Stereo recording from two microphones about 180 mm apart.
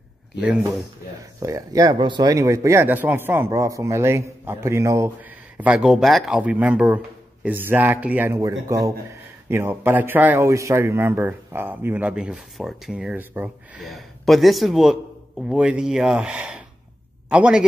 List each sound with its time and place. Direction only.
1.4 s a man's voice: 20° right (ahead or behind)
5.6 s a man's voice: 5° right (ahead or behind)
13.8 s a man's voice: centre (ahead or behind)